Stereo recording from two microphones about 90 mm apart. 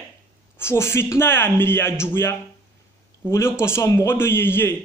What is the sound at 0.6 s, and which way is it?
A woman's voice, 30° left (ahead or behind).